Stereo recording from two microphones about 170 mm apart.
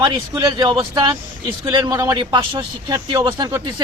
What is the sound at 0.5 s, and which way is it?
Speech, 25° right (ahead or behind).